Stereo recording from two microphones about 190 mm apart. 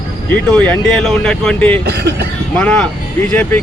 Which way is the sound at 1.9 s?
60° right (ahead or behind).